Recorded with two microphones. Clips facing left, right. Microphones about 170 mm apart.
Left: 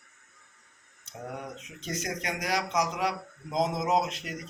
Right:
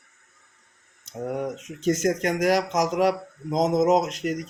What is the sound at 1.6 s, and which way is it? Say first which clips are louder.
Speech: right 13 dB; 45° right (ahead or behind).